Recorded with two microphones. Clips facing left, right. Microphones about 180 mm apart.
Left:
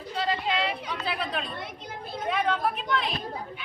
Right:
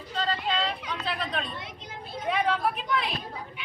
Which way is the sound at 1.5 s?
55° left (ahead or behind).